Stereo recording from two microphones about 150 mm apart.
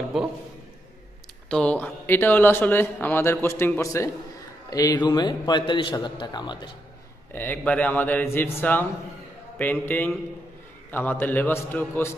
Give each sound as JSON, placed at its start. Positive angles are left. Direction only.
{"t": 1.5, "sound": "a man's voice", "side_deg": 10}
{"t": 7.3, "sound": "a man's voice", "side_deg": 10}